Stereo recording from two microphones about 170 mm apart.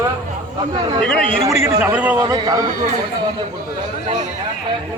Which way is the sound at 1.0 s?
5° left (ahead or behind).